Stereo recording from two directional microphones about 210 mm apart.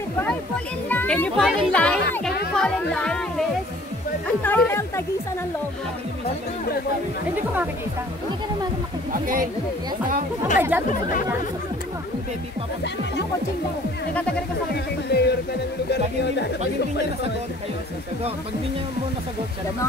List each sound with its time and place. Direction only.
0.8 s a child's voice: 5° left (ahead or behind)
9.1 s speech: 40° right (ahead or behind)
10.7 s speech: 10° right (ahead or behind)
15.0 s speech: 50° left (ahead or behind)